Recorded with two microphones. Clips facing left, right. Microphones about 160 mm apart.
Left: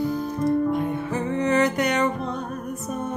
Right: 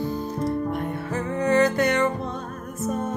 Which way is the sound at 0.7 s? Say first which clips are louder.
Left 3 dB; 20° left (ahead or behind).